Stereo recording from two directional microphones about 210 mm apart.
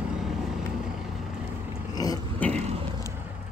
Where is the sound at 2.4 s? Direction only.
5° left (ahead or behind).